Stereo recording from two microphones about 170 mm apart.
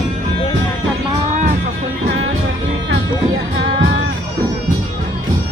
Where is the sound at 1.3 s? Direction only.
45° right (ahead or behind).